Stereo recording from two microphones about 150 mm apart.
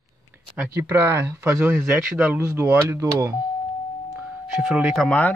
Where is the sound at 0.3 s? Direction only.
15° right (ahead or behind).